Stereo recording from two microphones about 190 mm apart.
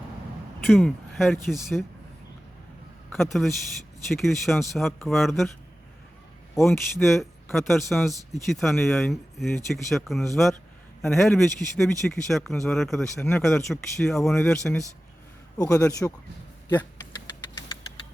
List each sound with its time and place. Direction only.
0.7 s speech: centre (ahead or behind)
3.1 s speech: centre (ahead or behind)
6.6 s speech: centre (ahead or behind)
15.5 s speech: 20° left (ahead or behind)